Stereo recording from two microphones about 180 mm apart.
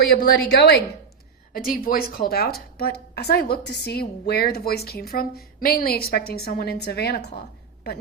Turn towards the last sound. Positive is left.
turn(degrees=60)  # may be behind; listen again after turning